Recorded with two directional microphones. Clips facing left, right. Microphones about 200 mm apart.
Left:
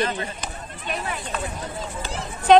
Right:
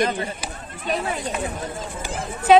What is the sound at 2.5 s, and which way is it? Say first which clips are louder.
Speech: even; 5° right (ahead or behind).